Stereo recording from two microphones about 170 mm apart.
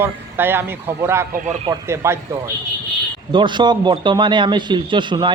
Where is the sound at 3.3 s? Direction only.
30° right (ahead or behind).